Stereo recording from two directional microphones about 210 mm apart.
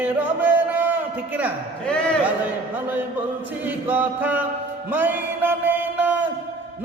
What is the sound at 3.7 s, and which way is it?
Speech, 10° right (ahead or behind).